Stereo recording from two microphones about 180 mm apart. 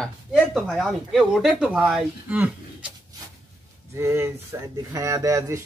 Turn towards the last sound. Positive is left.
turn(degrees=-15)  # may be behind; listen again after turning